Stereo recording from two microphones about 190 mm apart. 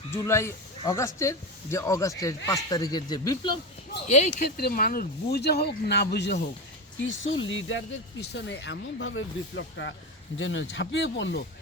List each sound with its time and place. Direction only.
0.1 s speech: 15° left (ahead or behind)
4.1 s speech: 35° left (ahead or behind)
4.5 s speech: 50° left (ahead or behind)
7.1 s speech: 90° left; by 9.9 s 75° left (ahead or behind)
10.3 s speech: 85° left; by 11.4 s 70° left (ahead or behind)